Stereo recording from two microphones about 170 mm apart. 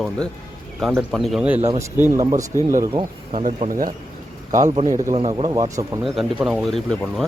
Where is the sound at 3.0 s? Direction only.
35° right (ahead or behind).